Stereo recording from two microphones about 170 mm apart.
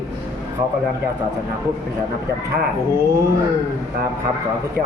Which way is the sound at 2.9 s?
15° right (ahead or behind).